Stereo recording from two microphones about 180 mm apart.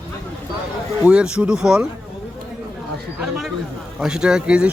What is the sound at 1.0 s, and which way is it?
Speech, 5° right (ahead or behind).